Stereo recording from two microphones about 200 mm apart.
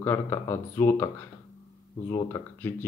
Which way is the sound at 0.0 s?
10° left (ahead or behind).